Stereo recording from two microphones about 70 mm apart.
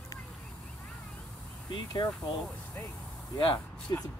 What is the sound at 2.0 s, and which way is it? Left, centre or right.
Speech, left.